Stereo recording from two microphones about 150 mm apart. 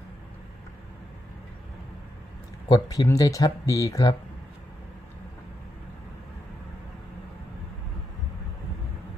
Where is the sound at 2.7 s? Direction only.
25° left (ahead or behind).